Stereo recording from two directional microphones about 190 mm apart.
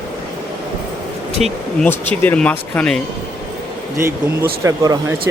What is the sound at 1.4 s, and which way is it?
Speech, 10° left (ahead or behind).